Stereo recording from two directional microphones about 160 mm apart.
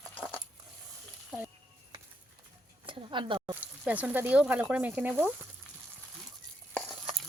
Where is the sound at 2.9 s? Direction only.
30° right (ahead or behind).